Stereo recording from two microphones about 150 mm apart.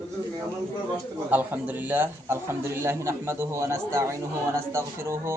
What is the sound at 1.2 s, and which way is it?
A man's voice, 10° right (ahead or behind).